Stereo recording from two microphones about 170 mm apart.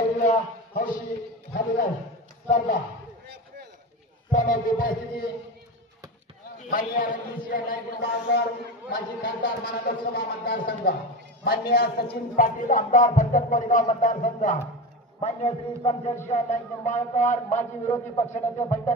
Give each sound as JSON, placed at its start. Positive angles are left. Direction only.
{"t": 0.2, "sound": "a sound", "side_deg": 45}
{"t": 2.4, "sound": "speech", "side_deg": 45}
{"t": 4.3, "sound": "speech", "side_deg": 50}
{"t": 6.7, "sound": "speech", "side_deg": 55}
{"t": 15.1, "sound": "a man's voice", "side_deg": 35}